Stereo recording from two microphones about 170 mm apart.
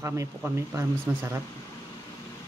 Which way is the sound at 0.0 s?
15° right (ahead or behind).